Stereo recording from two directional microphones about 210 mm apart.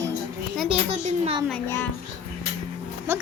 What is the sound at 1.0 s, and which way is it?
Speech, 30° right (ahead or behind).